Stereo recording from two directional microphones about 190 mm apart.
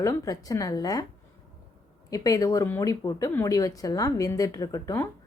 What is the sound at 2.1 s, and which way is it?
A woman's voice, 20° left (ahead or behind).